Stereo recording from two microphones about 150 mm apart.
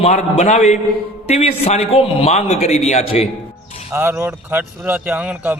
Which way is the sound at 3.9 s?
15° right (ahead or behind).